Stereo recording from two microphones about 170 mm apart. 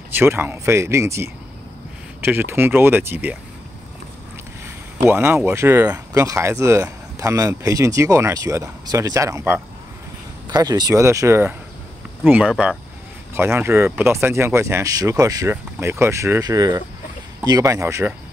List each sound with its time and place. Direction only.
0.1 s speech: 15° right (ahead or behind)
5.0 s speech: 15° right (ahead or behind)